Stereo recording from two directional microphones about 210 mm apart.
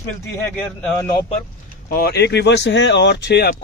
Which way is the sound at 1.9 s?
50° left (ahead or behind).